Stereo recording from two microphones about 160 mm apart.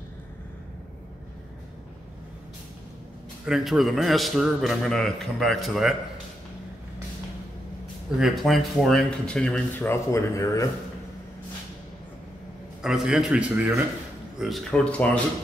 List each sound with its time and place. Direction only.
3.4 s a man's voice: centre (ahead or behind)
8.2 s a man's voice: centre (ahead or behind); by 10.7 s 20° left (ahead or behind)
12.8 s a man's voice: 5° right (ahead or behind)